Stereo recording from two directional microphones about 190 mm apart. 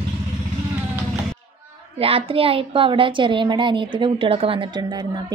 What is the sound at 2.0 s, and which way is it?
A woman's voice, 30° right (ahead or behind).